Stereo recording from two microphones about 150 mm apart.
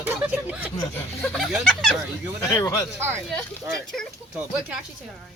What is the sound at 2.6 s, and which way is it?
Speech, 25° left (ahead or behind).